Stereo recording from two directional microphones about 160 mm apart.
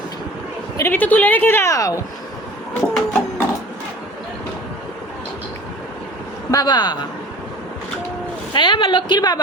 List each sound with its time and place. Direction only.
0.8 s a woman's voice: 10° left (ahead or behind)
2.9 s printer: 5° left (ahead or behind)
6.5 s a woman's voice: 25° left (ahead or behind)
8.5 s a woman's voice: 30° left (ahead or behind)